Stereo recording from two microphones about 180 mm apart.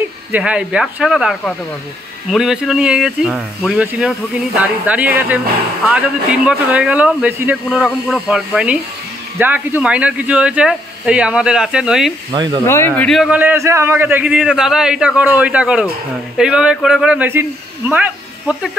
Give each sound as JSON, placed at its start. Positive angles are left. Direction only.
{"t": 0.3, "sound": "a man's voice", "side_deg": -5}
{"t": 12.3, "sound": "speech", "side_deg": -25}
{"t": 12.6, "sound": "a man's voice", "side_deg": 15}